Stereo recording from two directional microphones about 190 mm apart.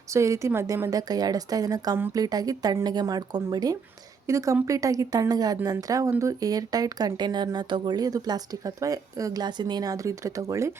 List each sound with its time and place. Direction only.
0.1 s speech: 15° right (ahead or behind)